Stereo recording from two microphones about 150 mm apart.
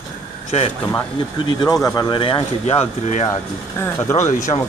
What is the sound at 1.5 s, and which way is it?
Speech, 30° left (ahead or behind).